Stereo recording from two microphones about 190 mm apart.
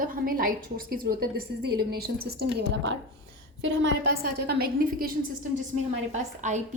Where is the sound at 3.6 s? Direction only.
75° right (ahead or behind).